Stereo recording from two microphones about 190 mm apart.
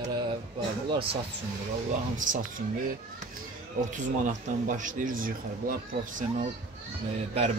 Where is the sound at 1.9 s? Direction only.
45° right (ahead or behind).